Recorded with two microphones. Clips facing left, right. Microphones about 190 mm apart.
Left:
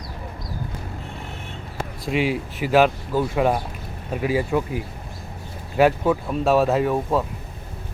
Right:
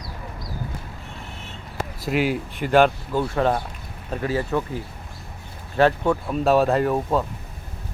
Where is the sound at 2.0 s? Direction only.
Centre (ahead or behind).